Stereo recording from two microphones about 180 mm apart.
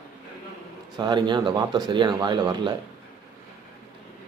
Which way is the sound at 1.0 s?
25° right (ahead or behind).